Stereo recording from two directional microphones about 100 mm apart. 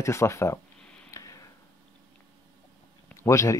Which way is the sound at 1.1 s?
35° left (ahead or behind).